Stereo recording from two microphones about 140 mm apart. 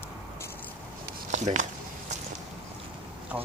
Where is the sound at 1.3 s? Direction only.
60° right (ahead or behind).